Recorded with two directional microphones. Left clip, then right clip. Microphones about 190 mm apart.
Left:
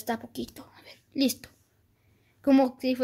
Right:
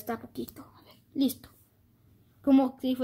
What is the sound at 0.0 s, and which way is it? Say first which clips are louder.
A woman's voice: left 3 dB; 35° left (ahead or behind).